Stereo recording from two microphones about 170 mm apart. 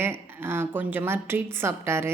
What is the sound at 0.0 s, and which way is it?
A woman's voice, 15° right (ahead or behind).